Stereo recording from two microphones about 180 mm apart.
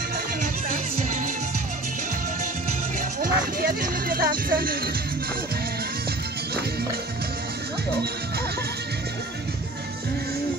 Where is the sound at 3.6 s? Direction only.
55° right (ahead or behind).